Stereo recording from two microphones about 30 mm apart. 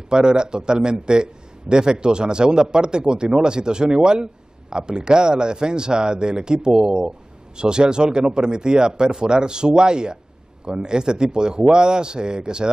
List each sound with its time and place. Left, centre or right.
0.1 s a man's voice: right